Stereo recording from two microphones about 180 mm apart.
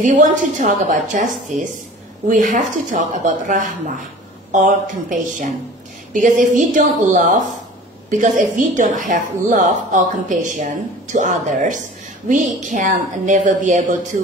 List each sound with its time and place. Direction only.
0.0 s a woman's voice: 45° right (ahead or behind)